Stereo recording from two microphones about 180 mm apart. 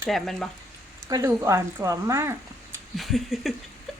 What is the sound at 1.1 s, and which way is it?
Speech, 15° right (ahead or behind).